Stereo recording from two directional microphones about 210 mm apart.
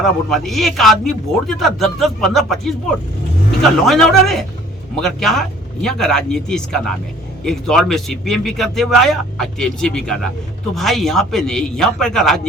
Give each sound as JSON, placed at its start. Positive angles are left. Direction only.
{"t": 0.0, "sound": "a man's voice", "side_deg": 0}
{"t": 3.8, "sound": "a man's voice", "side_deg": 0}